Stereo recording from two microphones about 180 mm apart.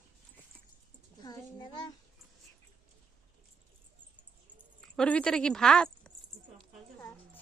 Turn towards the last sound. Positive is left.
turn(degrees=5)  # may be behind; listen again after turning